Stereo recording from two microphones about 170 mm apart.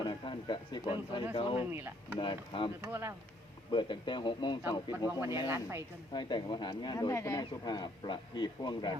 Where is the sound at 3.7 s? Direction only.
30° left (ahead or behind).